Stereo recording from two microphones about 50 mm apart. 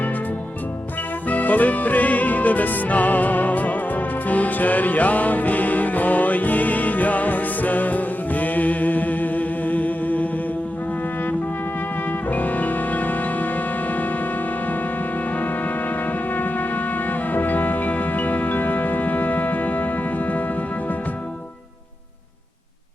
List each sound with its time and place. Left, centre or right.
1.3 s music: left
12.3 s music: left
16.0 s music: left